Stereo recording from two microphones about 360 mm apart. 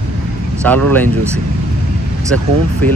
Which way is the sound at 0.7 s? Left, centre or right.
Centre.